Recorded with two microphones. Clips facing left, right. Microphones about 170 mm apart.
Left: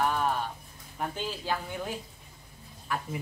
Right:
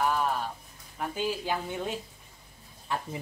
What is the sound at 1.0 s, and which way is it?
Speech, centre (ahead or behind).